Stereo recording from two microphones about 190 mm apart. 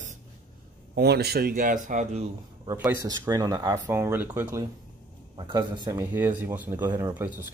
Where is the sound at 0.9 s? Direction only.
60° right (ahead or behind); by 2.2 s 40° right (ahead or behind).